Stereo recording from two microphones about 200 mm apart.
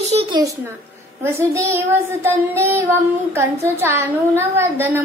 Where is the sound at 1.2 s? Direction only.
15° right (ahead or behind).